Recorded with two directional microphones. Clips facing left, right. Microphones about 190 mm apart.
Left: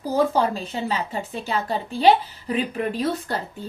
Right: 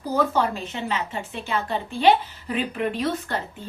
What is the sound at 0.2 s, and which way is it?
A woman's voice, 35° left (ahead or behind).